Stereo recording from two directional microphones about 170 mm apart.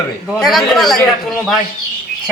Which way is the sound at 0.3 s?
Centre (ahead or behind).